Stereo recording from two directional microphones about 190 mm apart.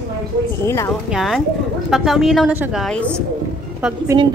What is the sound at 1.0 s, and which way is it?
A woman's voice, centre (ahead or behind).